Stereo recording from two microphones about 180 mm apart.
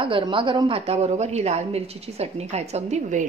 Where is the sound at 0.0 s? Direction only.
30° right (ahead or behind).